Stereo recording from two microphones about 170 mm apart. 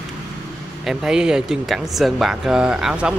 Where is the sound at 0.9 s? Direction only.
5° right (ahead or behind).